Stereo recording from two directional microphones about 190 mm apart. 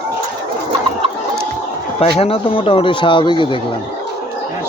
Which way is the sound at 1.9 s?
30° left (ahead or behind).